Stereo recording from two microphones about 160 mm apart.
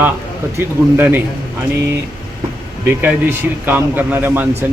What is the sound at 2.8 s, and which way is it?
A man's voice, 10° right (ahead or behind).